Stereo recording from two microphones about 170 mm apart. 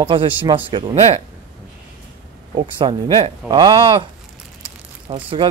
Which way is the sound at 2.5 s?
30° right (ahead or behind).